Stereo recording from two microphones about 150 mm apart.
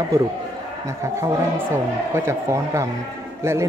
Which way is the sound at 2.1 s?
20° right (ahead or behind).